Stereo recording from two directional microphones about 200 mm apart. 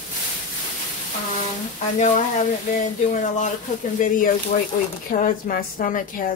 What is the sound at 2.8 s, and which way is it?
Speech, 40° left (ahead or behind).